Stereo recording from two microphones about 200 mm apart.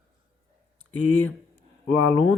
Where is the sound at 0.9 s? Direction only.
10° left (ahead or behind).